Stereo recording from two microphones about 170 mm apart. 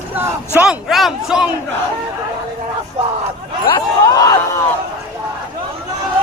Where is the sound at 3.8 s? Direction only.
20° left (ahead or behind).